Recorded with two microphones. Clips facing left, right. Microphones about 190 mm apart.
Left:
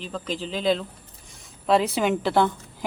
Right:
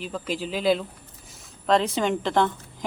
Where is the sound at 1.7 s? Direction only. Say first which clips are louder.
Left 1 dB; 10° left (ahead or behind).